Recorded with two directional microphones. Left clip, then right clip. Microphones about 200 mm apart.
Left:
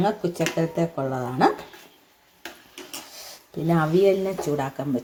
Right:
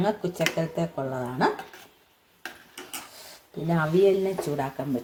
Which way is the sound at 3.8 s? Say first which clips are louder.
Left 1 dB; 10° left (ahead or behind).